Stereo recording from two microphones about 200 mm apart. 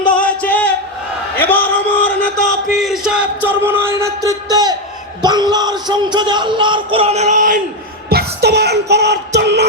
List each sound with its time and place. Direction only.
0.0 s music: 5° left (ahead or behind)
1.4 s a sound: 10° left (ahead or behind)
2.7 s music: centre (ahead or behind); by 4.7 s 20° right (ahead or behind)
5.2 s speech: 20° right (ahead or behind); by 7.6 s 40° right (ahead or behind)
8.1 s music: 55° right (ahead or behind)